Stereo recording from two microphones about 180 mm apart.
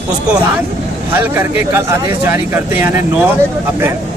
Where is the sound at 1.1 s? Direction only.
10° right (ahead or behind).